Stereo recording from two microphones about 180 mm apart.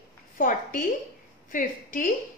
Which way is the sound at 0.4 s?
50° left (ahead or behind).